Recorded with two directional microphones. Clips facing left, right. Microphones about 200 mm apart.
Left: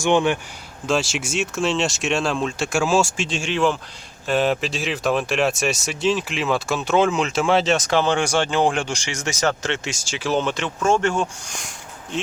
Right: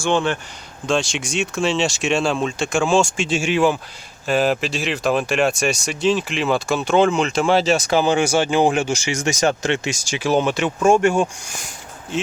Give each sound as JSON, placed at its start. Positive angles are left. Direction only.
{"t": 0.0, "sound": "speech", "side_deg": 15}
{"t": 0.9, "sound": "speech", "side_deg": 5}